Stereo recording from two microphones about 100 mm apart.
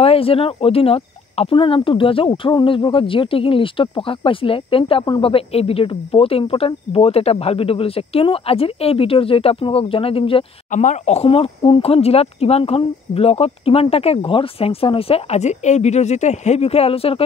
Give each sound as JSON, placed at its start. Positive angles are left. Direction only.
{"t": 0.0, "sound": "speech", "side_deg": 70}
{"t": 5.2, "sound": "speech", "side_deg": 75}
{"t": 11.1, "sound": "speech", "side_deg": 80}